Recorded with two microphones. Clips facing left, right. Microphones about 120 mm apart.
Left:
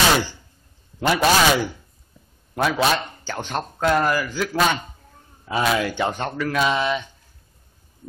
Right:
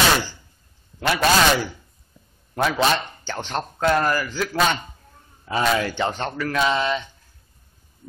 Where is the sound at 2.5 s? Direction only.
5° left (ahead or behind).